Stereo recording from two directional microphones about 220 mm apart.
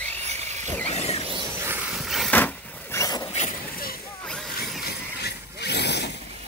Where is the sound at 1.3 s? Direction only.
15° right (ahead or behind); by 3.3 s 20° left (ahead or behind).